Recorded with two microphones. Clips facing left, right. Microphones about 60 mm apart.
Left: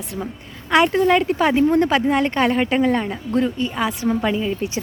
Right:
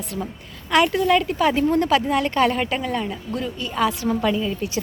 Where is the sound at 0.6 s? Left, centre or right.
Left.